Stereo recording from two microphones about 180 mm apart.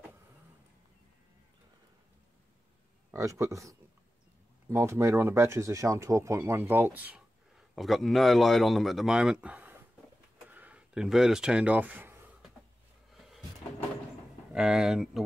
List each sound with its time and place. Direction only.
3.1 s speech: 15° right (ahead or behind)
10.5 s a sound: 10° right (ahead or behind)
13.1 s cupboard open or close: centre (ahead or behind)
14.5 s speech: 5° right (ahead or behind)